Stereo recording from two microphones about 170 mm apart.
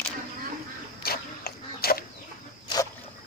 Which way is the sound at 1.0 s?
65° left (ahead or behind).